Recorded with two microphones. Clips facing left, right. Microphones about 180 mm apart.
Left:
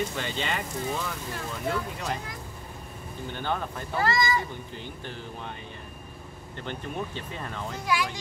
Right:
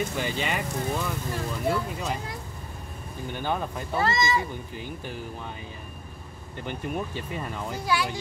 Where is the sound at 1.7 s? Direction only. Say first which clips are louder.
Right 2 dB; 5° right (ahead or behind).